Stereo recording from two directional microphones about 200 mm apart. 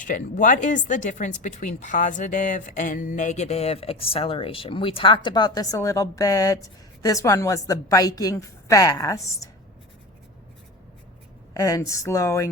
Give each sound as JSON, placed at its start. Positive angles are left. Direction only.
{"t": 0.0, "sound": "speech", "side_deg": 40}
{"t": 11.5, "sound": "speech", "side_deg": 15}